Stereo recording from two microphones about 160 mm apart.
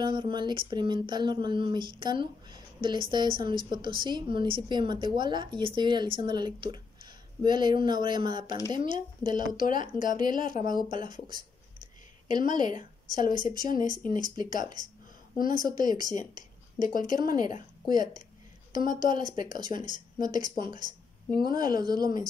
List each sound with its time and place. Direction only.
0.0 s speech: 30° right (ahead or behind)
12.3 s speech: 25° right (ahead or behind)
14.0 s speech: 55° left (ahead or behind)
15.3 s a woman's voice: 60° left (ahead or behind)
15.7 s speech: 25° right (ahead or behind)
16.0 s speech: 55° left (ahead or behind)
17.2 s a woman's voice: 25° right (ahead or behind)